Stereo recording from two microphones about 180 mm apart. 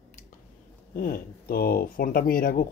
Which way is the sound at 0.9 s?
50° left (ahead or behind).